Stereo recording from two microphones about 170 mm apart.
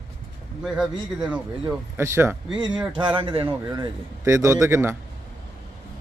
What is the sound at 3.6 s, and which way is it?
Speech, 20° right (ahead or behind).